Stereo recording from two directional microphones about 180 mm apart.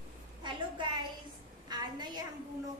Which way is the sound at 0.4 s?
25° right (ahead or behind).